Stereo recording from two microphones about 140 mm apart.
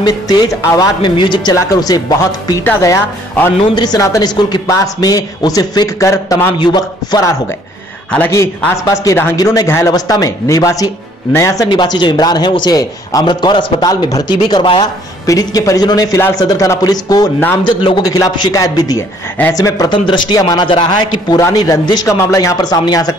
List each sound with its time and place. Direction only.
0.0 s a man's voice: 30° left (ahead or behind)
2.6 s a man's voice: 20° left (ahead or behind)
8.1 s a man's voice: 15° left (ahead or behind); by 14.9 s 35° left (ahead or behind)
15.2 s a man's voice: 25° left (ahead or behind)